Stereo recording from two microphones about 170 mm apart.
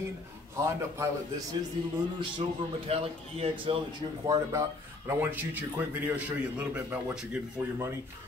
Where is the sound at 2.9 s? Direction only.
35° right (ahead or behind).